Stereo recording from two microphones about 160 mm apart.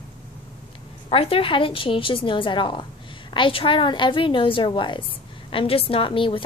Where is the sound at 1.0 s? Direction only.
35° left (ahead or behind).